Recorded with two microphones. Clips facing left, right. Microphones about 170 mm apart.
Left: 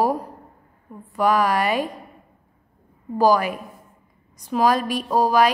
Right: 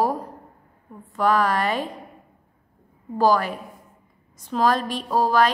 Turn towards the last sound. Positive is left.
turn(degrees=10)  # may be behind; listen again after turning